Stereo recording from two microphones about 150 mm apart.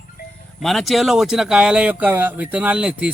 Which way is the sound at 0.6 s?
Centre (ahead or behind).